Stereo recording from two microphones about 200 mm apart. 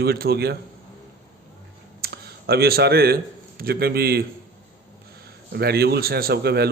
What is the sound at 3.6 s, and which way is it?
Speech, 50° right (ahead or behind).